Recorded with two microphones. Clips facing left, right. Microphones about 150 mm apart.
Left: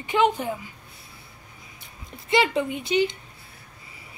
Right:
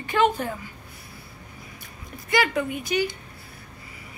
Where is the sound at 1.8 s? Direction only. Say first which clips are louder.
Left 1 dB; 25° left (ahead or behind).